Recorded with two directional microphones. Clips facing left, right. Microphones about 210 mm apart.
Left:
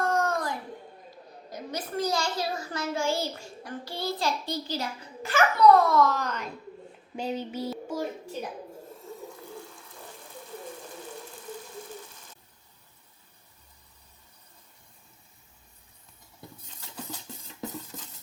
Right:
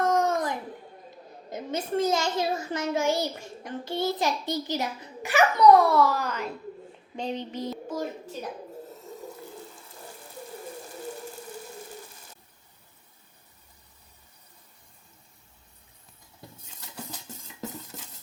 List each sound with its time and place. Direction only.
0.0 s a sound: 20° right (ahead or behind)
1.5 s a child's voice: 25° right (ahead or behind); by 6.5 s 5° right (ahead or behind)
7.2 s speech: 5° left (ahead or behind)